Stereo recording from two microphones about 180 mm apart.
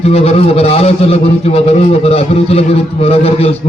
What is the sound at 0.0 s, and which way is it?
A man's voice, 35° left (ahead or behind).